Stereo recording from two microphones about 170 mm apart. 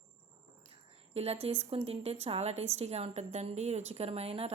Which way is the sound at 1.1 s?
35° right (ahead or behind).